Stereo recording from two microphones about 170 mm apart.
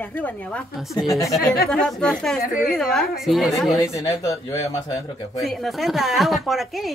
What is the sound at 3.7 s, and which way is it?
Speech, 20° left (ahead or behind).